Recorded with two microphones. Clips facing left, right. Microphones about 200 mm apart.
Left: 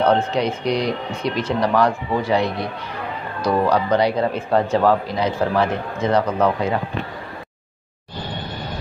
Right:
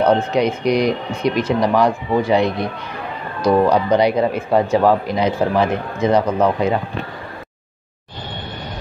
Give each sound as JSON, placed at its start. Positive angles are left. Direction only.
{"t": 0.0, "sound": "speech", "side_deg": -15}